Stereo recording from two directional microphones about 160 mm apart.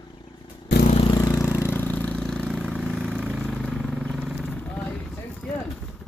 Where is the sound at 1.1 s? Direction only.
20° left (ahead or behind).